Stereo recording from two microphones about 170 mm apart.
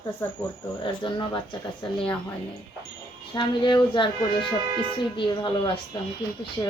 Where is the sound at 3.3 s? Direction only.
25° left (ahead or behind).